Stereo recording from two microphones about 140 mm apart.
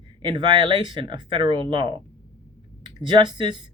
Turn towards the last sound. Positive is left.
turn(degrees=-35)  # may be behind; listen again after turning